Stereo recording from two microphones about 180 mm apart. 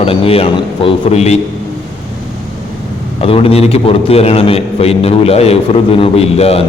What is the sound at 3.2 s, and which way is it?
A man's voice, 30° left (ahead or behind).